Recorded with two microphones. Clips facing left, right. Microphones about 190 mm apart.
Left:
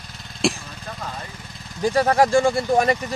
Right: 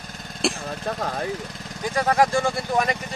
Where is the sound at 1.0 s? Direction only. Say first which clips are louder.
Right 4 dB; 60° right (ahead or behind).